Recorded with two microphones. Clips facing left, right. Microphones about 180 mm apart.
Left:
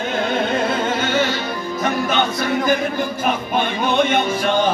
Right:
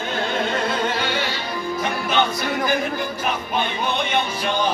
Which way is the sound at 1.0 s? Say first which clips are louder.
Left 5 dB; 45° left (ahead or behind).